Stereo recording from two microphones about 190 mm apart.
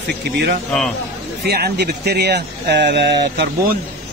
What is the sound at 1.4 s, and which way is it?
Speech, 55° right (ahead or behind).